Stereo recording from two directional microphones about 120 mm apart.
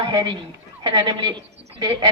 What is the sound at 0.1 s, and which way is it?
A woman's voice, 35° right (ahead or behind).